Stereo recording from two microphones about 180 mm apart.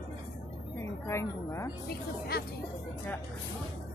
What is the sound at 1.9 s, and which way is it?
Speech, 60° left (ahead or behind).